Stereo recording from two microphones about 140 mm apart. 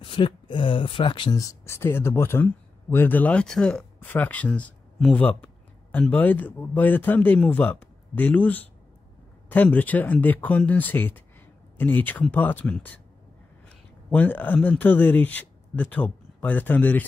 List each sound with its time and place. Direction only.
0.0 s speech: 35° left (ahead or behind)
1.4 s speech: 20° left (ahead or behind)
14.1 s speech: 10° left (ahead or behind)